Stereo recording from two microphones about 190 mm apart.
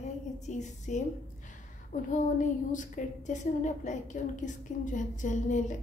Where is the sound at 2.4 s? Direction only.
40° left (ahead or behind).